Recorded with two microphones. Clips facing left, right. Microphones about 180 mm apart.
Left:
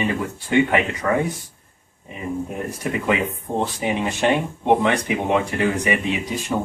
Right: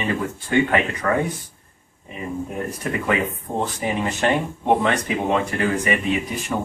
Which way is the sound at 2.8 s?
20° left (ahead or behind).